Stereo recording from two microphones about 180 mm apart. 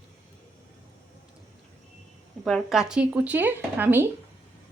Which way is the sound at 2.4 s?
Centre (ahead or behind).